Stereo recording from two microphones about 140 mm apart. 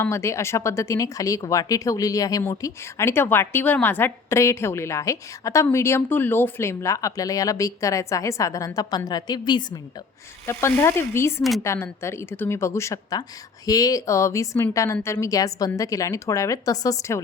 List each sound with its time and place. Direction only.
0.0 s speech: 20° left (ahead or behind)
10.4 s speech: 20° left (ahead or behind)